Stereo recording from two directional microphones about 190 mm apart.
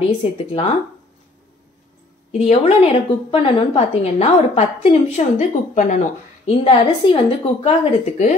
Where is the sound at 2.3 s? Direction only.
35° left (ahead or behind).